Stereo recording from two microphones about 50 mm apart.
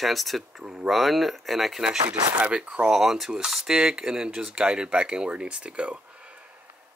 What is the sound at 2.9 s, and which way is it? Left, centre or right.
Speech, centre.